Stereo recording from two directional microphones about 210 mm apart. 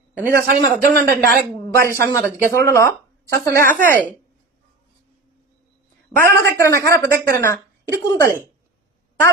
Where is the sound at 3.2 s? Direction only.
15° left (ahead or behind).